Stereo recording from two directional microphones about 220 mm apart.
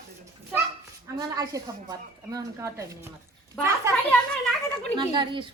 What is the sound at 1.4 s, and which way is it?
A woman's voice, 15° right (ahead or behind).